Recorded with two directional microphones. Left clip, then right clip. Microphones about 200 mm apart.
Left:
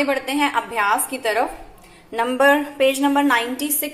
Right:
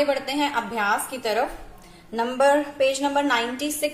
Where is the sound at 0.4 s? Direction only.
20° left (ahead or behind).